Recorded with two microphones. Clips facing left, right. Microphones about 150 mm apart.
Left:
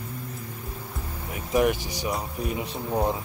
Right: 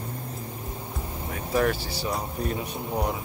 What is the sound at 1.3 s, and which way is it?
Speech, 15° left (ahead or behind).